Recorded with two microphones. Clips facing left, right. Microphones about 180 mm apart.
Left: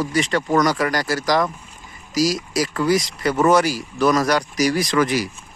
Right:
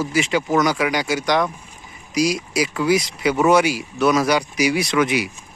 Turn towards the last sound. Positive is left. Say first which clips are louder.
# even
turn(degrees=0)  # may be behind; listen again after turning